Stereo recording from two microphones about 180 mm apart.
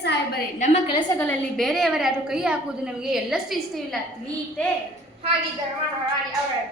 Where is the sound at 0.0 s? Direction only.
70° left (ahead or behind).